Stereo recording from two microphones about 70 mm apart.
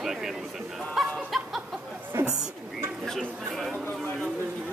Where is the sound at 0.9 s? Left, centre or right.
Centre.